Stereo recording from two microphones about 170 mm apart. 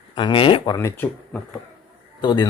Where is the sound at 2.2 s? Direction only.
25° left (ahead or behind).